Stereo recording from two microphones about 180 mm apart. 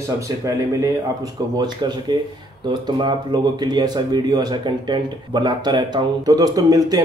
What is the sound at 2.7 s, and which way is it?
Speech, 25° right (ahead or behind).